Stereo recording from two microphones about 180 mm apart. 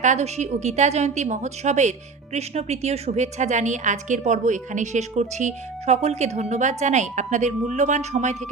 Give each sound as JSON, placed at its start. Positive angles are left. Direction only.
{"t": 0.0, "sound": "a woman's voice", "side_deg": -40}